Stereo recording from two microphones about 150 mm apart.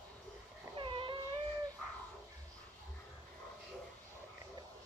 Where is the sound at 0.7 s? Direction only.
35° right (ahead or behind).